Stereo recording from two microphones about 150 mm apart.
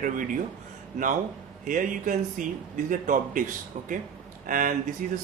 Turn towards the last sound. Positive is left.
turn(degrees=-60)  # may be behind; listen again after turning